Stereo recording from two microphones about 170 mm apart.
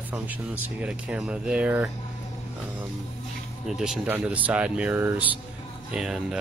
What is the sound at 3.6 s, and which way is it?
Speech, 5° right (ahead or behind).